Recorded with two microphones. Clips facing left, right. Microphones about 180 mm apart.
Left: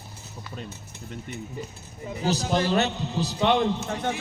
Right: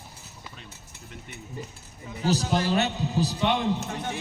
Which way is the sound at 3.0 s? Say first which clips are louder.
Right 2 dB; 10° right (ahead or behind).